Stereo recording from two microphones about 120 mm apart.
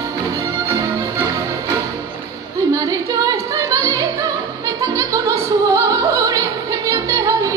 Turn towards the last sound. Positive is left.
turn(degrees=-30)  # may be behind; listen again after turning